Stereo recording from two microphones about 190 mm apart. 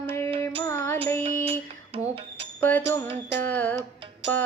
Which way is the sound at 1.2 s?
30° right (ahead or behind).